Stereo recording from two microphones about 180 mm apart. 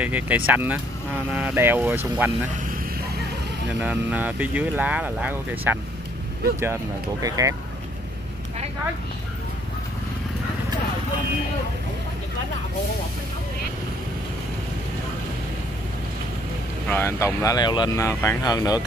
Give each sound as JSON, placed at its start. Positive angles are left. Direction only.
{"t": 0.0, "sound": "speech", "side_deg": -10}
{"t": 3.8, "sound": "speech", "side_deg": -10}
{"t": 16.8, "sound": "speech", "side_deg": 10}